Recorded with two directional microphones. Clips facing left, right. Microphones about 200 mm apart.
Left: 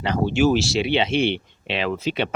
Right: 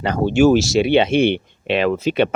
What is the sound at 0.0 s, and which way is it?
Speech, 45° right (ahead or behind).